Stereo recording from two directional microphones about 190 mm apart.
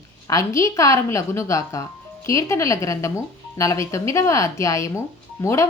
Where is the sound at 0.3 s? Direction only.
15° left (ahead or behind).